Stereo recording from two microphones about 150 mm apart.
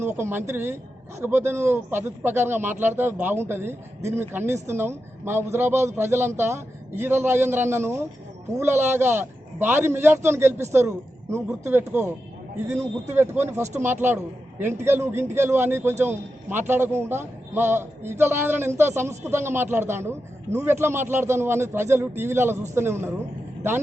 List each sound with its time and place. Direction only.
0.0 s a man's voice: 15° right (ahead or behind)